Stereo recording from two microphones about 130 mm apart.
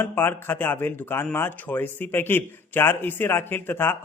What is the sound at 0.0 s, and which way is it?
Speech, 15° left (ahead or behind).